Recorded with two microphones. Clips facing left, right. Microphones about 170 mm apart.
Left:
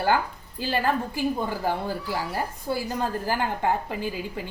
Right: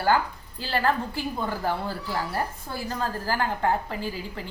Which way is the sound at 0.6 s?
15° left (ahead or behind).